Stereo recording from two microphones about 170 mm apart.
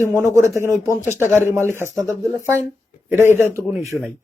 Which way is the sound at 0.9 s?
15° left (ahead or behind).